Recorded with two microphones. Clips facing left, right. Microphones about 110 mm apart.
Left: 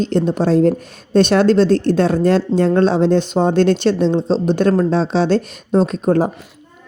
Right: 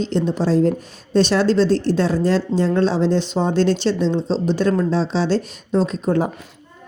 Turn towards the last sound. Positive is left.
turn(degrees=50)  # may be behind; listen again after turning